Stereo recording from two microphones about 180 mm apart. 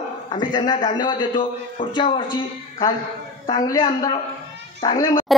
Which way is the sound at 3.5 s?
25° left (ahead or behind).